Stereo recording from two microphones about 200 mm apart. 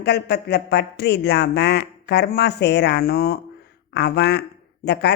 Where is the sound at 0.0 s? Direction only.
55° left (ahead or behind).